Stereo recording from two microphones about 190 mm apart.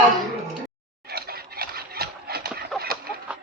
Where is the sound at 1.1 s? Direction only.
55° right (ahead or behind).